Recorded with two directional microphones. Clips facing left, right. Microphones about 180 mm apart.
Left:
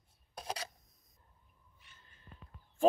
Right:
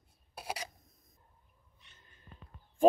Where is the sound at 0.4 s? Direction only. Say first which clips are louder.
Right 1 dB; 10° right (ahead or behind).